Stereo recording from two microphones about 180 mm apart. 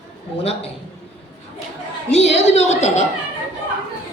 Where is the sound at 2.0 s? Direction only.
35° left (ahead or behind).